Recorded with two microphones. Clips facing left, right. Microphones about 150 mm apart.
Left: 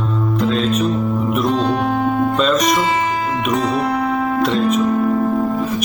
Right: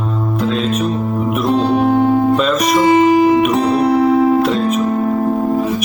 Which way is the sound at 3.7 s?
30° right (ahead or behind).